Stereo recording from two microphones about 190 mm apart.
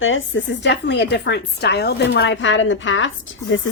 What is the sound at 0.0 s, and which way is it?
A woman's voice, 90° left.